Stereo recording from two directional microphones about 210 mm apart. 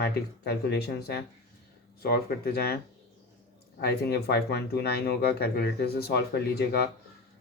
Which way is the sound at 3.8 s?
50° left (ahead or behind).